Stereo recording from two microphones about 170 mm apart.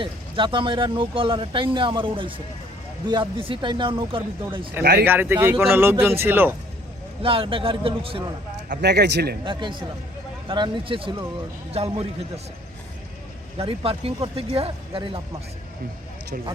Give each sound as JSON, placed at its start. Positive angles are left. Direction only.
{"t": 0.0, "sound": "speech", "side_deg": -30}
{"t": 4.8, "sound": "speech", "side_deg": -70}
{"t": 5.0, "sound": "speech", "side_deg": -10}
{"t": 7.2, "sound": "speech", "side_deg": -30}
{"t": 8.7, "sound": "speech", "side_deg": -80}
{"t": 9.4, "sound": "speech", "side_deg": -30}
{"t": 13.6, "sound": "speech", "side_deg": -35}